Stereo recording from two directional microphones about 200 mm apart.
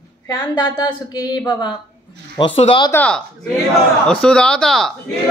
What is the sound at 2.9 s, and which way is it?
Speech, 10° left (ahead or behind).